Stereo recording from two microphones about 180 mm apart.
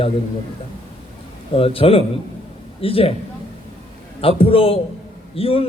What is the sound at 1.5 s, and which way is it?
A man's voice, 30° left (ahead or behind).